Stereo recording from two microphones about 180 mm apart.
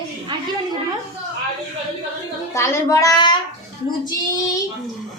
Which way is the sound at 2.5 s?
15° left (ahead or behind).